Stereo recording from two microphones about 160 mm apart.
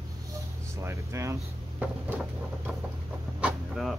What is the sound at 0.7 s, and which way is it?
Speech, 15° right (ahead or behind).